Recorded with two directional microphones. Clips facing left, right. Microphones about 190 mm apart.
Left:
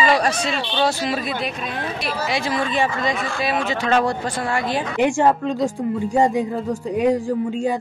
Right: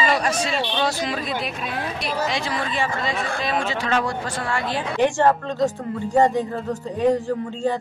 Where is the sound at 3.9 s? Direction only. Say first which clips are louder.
Left 6 dB; 35° left (ahead or behind).